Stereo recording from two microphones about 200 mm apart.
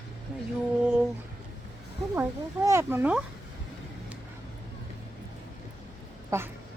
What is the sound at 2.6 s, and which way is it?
Speech, 15° right (ahead or behind).